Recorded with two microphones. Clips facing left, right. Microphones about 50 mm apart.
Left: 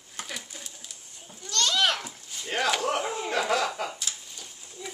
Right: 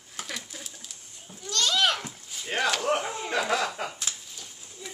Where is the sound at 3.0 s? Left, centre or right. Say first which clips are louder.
Left 2 dB; centre.